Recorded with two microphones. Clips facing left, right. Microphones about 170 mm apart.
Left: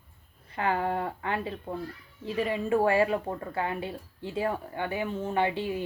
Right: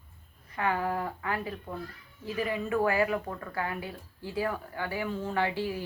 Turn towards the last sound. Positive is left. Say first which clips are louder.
# left 2 dB
turn(degrees=25)  # may be behind; listen again after turning